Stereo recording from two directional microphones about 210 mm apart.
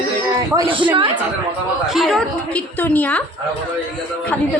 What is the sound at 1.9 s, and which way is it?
A woman's voice, centre (ahead or behind).